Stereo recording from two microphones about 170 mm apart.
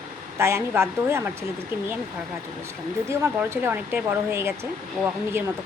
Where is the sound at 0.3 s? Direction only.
15° right (ahead or behind).